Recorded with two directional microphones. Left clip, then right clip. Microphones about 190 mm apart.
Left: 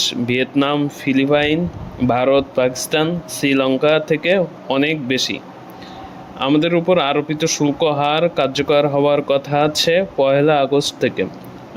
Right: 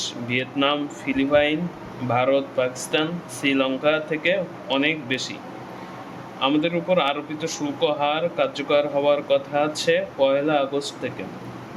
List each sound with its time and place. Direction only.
0.0 s speech: 40° left (ahead or behind)
6.4 s speech: 40° left (ahead or behind)